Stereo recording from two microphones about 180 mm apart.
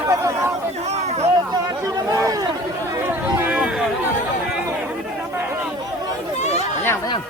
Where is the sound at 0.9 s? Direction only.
35° right (ahead or behind).